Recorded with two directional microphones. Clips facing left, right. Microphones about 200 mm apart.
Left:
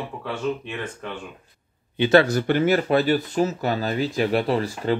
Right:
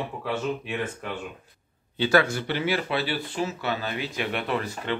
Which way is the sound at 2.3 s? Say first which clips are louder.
Left 7 dB; 45° left (ahead or behind).